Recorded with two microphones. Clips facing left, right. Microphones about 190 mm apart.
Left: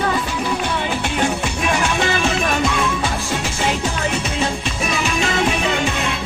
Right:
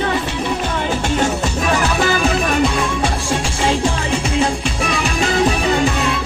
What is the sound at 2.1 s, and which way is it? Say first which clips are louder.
Music: right 3 dB; 35° right (ahead or behind).